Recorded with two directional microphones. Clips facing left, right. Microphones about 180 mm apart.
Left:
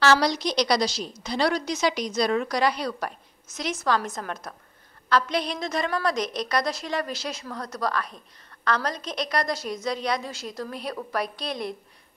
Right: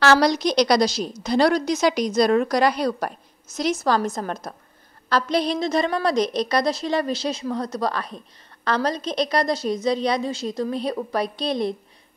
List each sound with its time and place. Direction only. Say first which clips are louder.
0.0 s a woman's voice: right 4 dB; 50° right (ahead or behind); by 11.7 s 25° right (ahead or behind)